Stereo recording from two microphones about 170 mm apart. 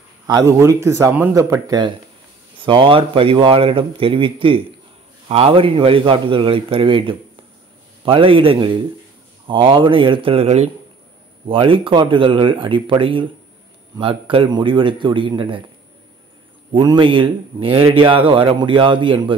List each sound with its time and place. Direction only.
0.3 s speech: 20° right (ahead or behind)
2.6 s speech: 30° right (ahead or behind)
16.7 s speech: 30° right (ahead or behind)